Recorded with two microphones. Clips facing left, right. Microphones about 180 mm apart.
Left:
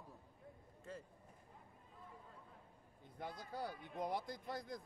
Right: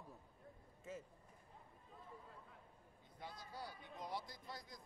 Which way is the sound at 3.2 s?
50° left (ahead or behind).